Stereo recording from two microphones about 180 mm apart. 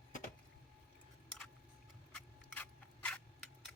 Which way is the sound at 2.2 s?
10° left (ahead or behind).